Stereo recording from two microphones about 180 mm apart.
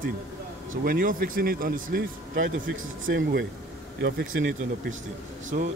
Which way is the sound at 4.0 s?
75° right (ahead or behind).